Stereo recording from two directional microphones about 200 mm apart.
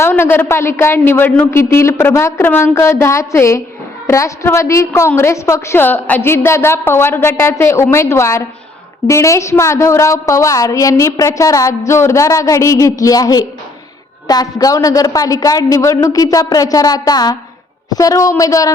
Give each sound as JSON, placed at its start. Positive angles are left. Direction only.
{"t": 0.0, "sound": "a woman's voice", "side_deg": 10}